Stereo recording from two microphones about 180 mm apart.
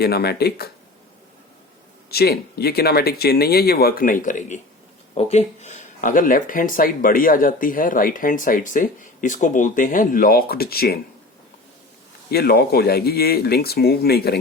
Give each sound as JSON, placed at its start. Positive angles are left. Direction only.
{"t": 0.0, "sound": "speech", "side_deg": 60}
{"t": 2.0, "sound": "speech", "side_deg": 60}
{"t": 12.3, "sound": "speech", "side_deg": 60}